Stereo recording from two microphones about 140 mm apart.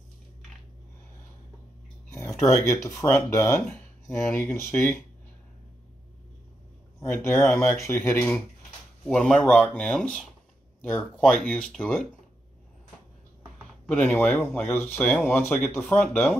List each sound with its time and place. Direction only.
2.0 s speech: 20° left (ahead or behind)
7.0 s speech: 15° left (ahead or behind)
9.0 s speech: 5° left (ahead or behind)
13.8 s speech: 10° left (ahead or behind)